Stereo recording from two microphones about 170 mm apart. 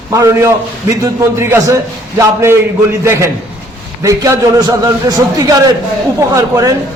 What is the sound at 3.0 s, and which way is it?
A man's voice, 15° right (ahead or behind).